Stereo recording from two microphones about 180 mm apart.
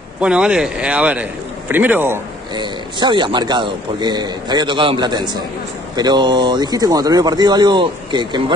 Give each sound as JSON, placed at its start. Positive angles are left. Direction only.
{"t": 0.2, "sound": "speech", "side_deg": -5}
{"t": 2.5, "sound": "a man's voice", "side_deg": -25}